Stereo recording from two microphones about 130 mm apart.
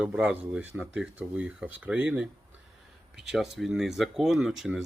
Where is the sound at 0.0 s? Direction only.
5° right (ahead or behind).